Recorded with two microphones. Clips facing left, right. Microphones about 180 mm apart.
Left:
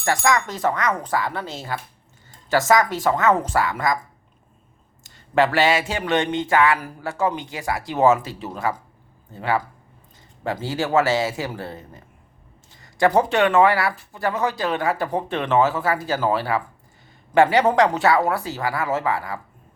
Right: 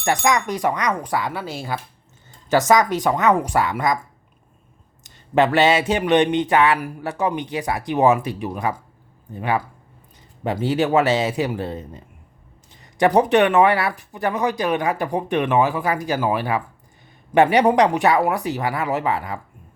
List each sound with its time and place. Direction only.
0.0 s speech: 20° right (ahead or behind)
5.0 s speech: 20° right (ahead or behind)